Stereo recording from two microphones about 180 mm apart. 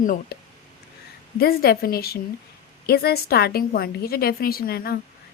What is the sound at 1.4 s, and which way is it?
A woman's voice, 55° left (ahead or behind).